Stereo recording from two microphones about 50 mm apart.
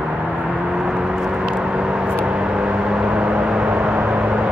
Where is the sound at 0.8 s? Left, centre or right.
Centre.